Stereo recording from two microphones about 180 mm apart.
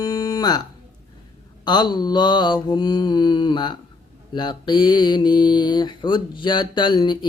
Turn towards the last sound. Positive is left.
turn(degrees=25)  # may be behind; listen again after turning